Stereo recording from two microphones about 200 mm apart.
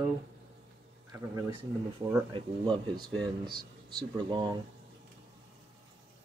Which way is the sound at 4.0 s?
20° right (ahead or behind).